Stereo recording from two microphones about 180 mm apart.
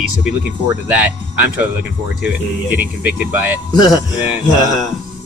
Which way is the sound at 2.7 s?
10° right (ahead or behind).